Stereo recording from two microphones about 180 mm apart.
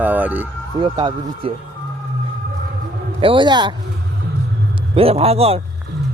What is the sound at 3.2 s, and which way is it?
Speech, 30° right (ahead or behind).